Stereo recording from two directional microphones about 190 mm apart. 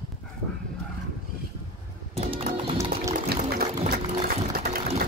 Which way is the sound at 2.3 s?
30° right (ahead or behind).